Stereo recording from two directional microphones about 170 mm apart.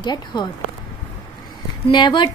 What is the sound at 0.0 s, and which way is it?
Speech, 25° left (ahead or behind).